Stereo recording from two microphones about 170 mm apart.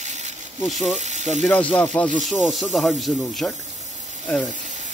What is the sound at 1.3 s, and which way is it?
Speech, 10° left (ahead or behind).